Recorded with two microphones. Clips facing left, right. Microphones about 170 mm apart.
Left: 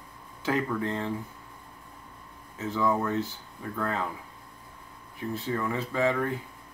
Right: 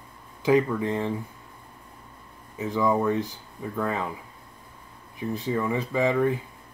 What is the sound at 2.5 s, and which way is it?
Speech, 15° right (ahead or behind).